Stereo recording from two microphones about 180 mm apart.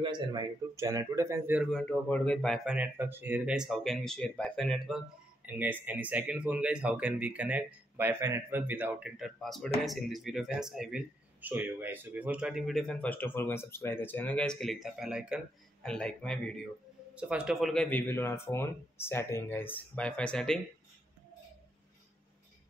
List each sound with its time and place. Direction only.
0.0 s speech: 25° right (ahead or behind)
1.7 s speech: 5° left (ahead or behind)
17.1 s speech: 5° right (ahead or behind)